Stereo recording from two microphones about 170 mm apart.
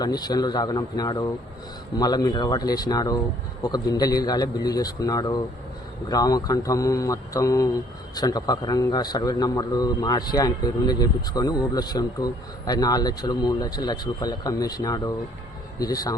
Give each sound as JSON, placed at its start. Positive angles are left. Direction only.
{"t": 0.0, "sound": "speech", "side_deg": 25}